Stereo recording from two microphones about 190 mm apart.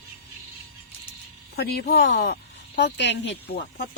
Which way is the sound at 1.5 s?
55° left (ahead or behind).